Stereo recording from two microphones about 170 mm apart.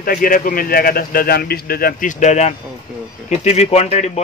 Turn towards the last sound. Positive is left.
turn(degrees=40)  # may be behind; listen again after turning